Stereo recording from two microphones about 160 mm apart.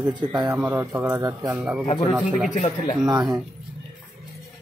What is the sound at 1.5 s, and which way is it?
Speech, 10° right (ahead or behind).